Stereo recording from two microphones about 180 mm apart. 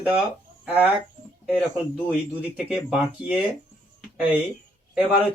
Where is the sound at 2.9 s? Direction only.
5° right (ahead or behind).